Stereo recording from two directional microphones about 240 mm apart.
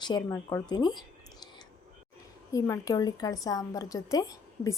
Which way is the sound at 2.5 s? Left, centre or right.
Centre.